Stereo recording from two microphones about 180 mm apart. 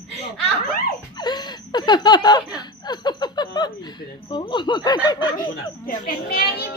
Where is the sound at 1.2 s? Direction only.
25° left (ahead or behind).